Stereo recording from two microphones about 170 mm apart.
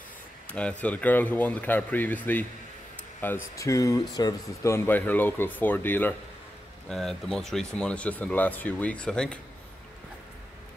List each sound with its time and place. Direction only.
0.5 s speech: 5° left (ahead or behind)